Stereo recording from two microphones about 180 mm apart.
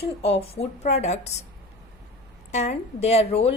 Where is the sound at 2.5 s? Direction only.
40° left (ahead or behind).